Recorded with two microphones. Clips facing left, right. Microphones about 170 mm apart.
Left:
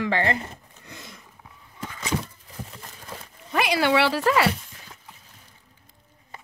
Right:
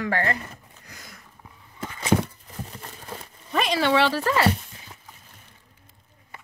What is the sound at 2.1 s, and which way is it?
Horse, 60° right (ahead or behind).